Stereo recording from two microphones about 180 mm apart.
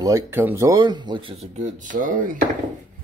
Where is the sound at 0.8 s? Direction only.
25° right (ahead or behind); by 2.4 s 50° right (ahead or behind).